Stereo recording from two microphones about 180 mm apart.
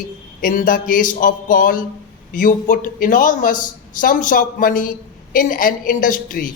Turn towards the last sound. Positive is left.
turn(degrees=50)  # may be behind; listen again after turning